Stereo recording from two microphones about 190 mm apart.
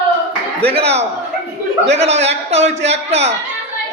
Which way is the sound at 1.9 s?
35° right (ahead or behind).